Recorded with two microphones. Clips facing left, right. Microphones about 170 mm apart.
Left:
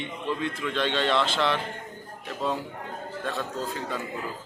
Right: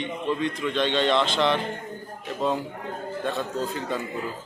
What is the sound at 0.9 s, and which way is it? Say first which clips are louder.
Speech: right 2 dB; 20° right (ahead or behind).